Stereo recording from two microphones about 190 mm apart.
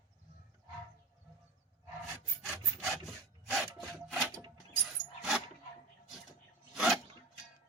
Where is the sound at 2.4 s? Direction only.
Centre (ahead or behind).